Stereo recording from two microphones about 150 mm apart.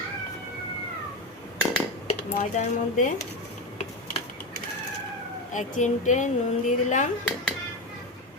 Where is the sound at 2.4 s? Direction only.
60° left (ahead or behind).